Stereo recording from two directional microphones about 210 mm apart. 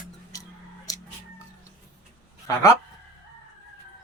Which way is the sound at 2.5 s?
15° left (ahead or behind).